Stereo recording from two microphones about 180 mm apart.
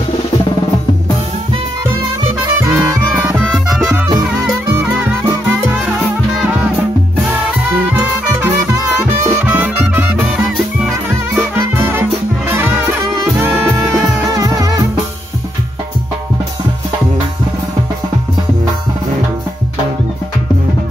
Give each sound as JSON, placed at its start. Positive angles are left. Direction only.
{"t": 2.7, "sound": "music", "side_deg": -10}
{"t": 3.5, "sound": "music", "side_deg": 0}
{"t": 4.7, "sound": "music", "side_deg": -10}
{"t": 7.9, "sound": "music", "side_deg": -10}
{"t": 14.2, "sound": "drum", "side_deg": -20}